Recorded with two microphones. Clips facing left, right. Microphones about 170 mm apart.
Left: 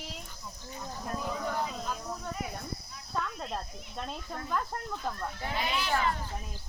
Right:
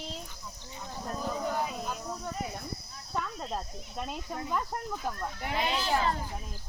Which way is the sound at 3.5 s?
5° right (ahead or behind).